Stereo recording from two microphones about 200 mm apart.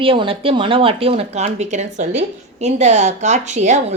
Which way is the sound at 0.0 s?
25° right (ahead or behind).